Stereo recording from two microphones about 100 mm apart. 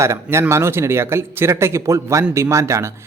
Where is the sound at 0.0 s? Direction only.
30° right (ahead or behind).